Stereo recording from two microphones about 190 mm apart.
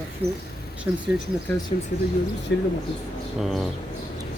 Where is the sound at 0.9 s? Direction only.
10° right (ahead or behind).